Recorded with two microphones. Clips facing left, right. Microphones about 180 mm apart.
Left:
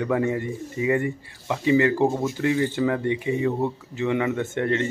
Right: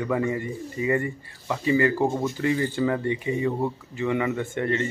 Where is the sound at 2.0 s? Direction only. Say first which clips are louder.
Left 2 dB; centre (ahead or behind).